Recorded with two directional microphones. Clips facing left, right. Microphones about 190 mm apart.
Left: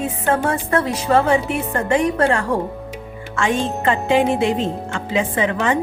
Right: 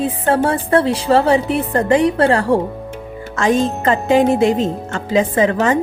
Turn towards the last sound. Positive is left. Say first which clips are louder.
# right 4 dB
turn(degrees=-40)  # may be behind; listen again after turning